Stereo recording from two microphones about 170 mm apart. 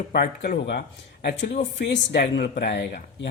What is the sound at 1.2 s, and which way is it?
Speech, 90° left.